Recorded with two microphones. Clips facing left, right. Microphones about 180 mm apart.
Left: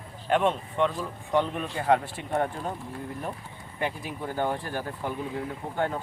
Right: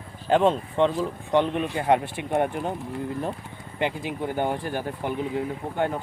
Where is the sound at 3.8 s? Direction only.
20° right (ahead or behind).